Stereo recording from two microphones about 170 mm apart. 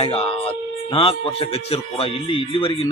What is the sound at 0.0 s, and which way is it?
Speech, 35° left (ahead or behind).